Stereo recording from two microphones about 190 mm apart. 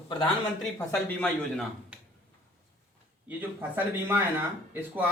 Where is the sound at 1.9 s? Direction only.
5° right (ahead or behind).